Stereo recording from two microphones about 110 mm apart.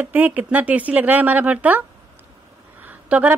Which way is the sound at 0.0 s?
15° right (ahead or behind).